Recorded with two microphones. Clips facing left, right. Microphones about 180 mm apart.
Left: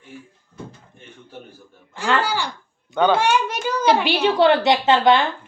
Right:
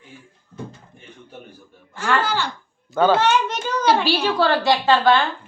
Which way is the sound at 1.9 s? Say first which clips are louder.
Even; 15° left (ahead or behind).